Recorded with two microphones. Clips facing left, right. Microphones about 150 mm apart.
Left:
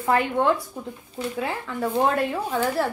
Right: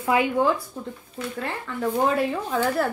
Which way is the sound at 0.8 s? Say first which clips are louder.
Left 1 dB; 10° left (ahead or behind).